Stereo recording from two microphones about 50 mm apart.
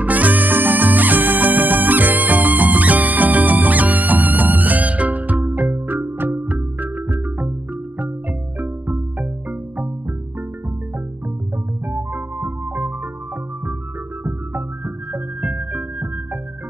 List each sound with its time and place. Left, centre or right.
0.0 s music: right
8.5 s music: right
11.9 s music: right
15.1 s music: right